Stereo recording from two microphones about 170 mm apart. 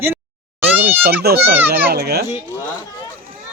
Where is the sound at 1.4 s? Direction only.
10° right (ahead or behind).